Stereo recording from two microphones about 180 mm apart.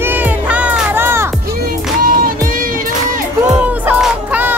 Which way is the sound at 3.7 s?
10° right (ahead or behind).